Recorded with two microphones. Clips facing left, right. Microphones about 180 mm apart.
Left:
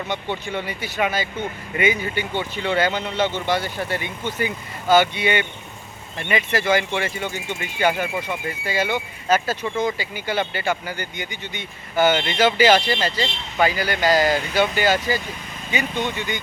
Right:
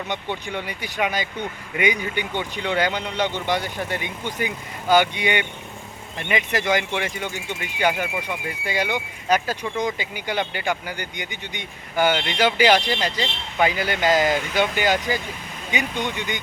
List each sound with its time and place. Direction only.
0.1 s speech: 15° right (ahead or behind)